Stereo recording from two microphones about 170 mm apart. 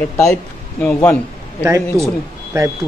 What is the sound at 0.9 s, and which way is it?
Speech, 15° left (ahead or behind).